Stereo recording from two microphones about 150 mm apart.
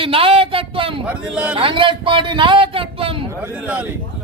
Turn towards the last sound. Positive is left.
turn(degrees=-35)  # may be behind; listen again after turning